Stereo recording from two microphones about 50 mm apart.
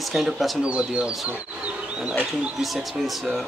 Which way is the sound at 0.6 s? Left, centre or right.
Right.